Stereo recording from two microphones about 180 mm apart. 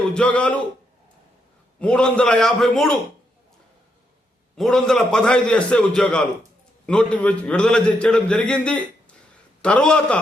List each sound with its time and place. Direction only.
0.1 s a man's voice: 5° left (ahead or behind)
1.8 s a man's voice: 5° left (ahead or behind)
4.5 s a man's voice: centre (ahead or behind)